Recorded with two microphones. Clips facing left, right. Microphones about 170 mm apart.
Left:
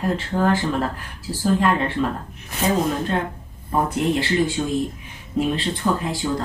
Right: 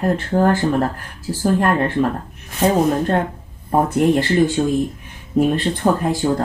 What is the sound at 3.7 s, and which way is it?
Speech, 50° right (ahead or behind).